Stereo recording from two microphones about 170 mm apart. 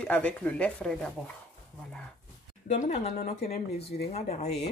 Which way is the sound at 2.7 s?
45° left (ahead or behind).